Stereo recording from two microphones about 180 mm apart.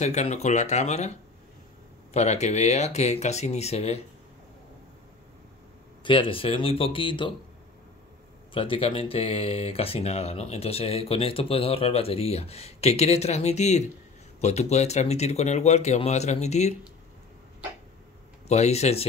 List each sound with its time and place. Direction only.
0.0 s speech: 40° left (ahead or behind)
2.1 s speech: 40° left (ahead or behind)
6.0 s speech: 30° left (ahead or behind)
8.5 s speech: 30° left (ahead or behind)
18.5 s speech: 40° left (ahead or behind)